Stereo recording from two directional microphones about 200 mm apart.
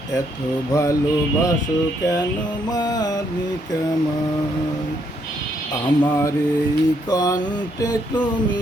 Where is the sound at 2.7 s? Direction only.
20° left (ahead or behind).